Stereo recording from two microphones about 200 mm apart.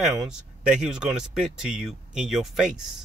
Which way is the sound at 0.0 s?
5° right (ahead or behind).